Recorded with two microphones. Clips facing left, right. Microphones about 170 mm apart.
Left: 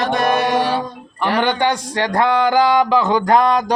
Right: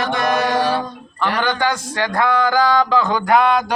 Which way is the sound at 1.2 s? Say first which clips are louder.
Left 2 dB; 25° left (ahead or behind).